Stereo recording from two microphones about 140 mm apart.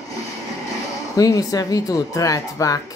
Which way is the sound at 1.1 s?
25° left (ahead or behind).